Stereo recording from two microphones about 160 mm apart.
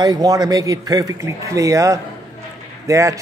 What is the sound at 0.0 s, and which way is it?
A man's voice, 25° right (ahead or behind).